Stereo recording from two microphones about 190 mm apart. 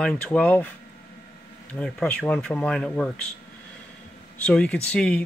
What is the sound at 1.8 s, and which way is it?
Speech, 5° left (ahead or behind).